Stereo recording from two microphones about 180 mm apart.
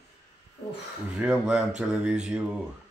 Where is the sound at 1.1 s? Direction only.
5° right (ahead or behind).